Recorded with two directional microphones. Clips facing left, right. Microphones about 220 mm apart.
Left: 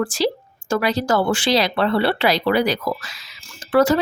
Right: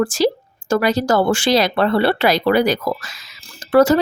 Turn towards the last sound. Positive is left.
turn(degrees=-40)  # may be behind; listen again after turning